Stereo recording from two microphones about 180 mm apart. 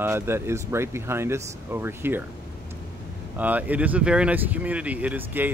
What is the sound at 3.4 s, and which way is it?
Speech, 10° right (ahead or behind).